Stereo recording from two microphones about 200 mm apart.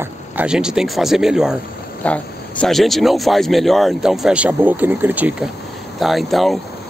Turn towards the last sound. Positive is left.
turn(degrees=0)  # may be behind; listen again after turning